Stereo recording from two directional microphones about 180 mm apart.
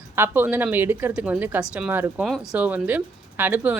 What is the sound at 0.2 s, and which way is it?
Speech, 10° right (ahead or behind).